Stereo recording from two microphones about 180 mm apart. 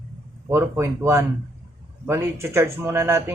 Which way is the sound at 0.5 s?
15° right (ahead or behind).